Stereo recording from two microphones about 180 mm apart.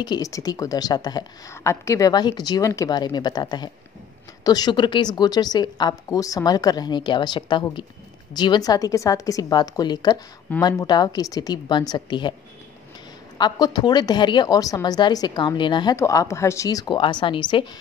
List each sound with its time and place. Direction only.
0.0 s a woman's voice: 20° left (ahead or behind)
13.4 s a woman's voice: 25° left (ahead or behind)